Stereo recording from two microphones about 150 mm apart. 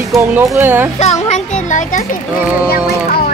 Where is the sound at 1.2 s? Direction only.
50° left (ahead or behind).